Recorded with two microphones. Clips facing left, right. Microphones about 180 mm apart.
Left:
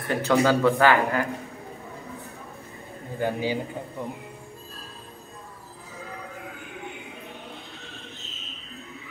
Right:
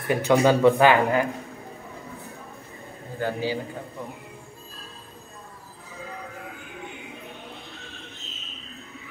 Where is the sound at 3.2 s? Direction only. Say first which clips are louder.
Left 1 dB; 15° left (ahead or behind).